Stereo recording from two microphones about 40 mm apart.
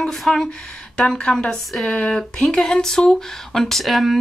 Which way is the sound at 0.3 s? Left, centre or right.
Centre.